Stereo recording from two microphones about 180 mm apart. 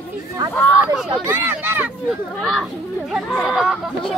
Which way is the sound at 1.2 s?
10° right (ahead or behind).